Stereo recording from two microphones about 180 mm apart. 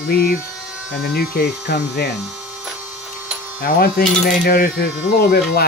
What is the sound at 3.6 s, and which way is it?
Coin, 55° left (ahead or behind).